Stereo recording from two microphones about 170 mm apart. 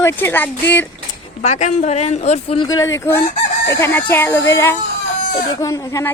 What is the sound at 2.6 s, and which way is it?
Speech, 20° left (ahead or behind).